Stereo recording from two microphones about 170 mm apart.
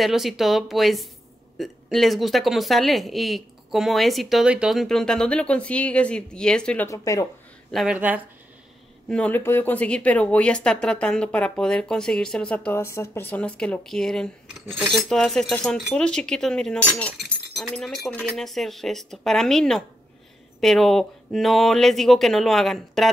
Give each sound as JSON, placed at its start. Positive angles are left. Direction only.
{"t": 0.0, "sound": "speech", "side_deg": 0}
{"t": 6.9, "sound": "speech", "side_deg": 20}
{"t": 7.7, "sound": "speech", "side_deg": -5}
{"t": 9.1, "sound": "speech", "side_deg": 10}